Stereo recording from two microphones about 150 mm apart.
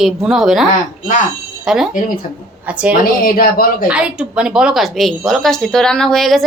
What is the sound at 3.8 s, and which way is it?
Speech, 10° right (ahead or behind).